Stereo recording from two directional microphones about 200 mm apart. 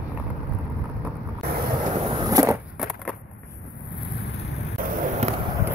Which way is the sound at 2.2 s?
15° right (ahead or behind).